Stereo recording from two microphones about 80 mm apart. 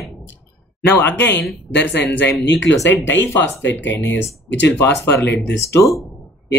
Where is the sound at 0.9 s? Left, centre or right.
Left.